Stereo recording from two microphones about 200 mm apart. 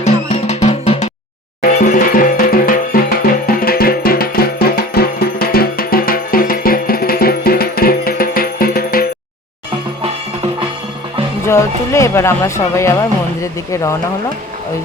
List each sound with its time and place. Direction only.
0.0 s music: 35° left (ahead or behind)
11.4 s music: 15° left (ahead or behind)
13.4 s speech: 15° left (ahead or behind)